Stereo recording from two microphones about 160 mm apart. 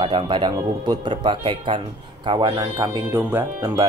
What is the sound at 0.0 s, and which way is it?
Speech, 30° right (ahead or behind).